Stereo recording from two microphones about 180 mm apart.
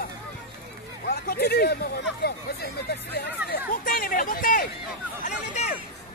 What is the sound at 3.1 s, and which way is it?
Speech, 55° left (ahead or behind).